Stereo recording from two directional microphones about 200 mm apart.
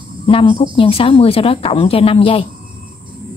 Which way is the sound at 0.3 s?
25° left (ahead or behind).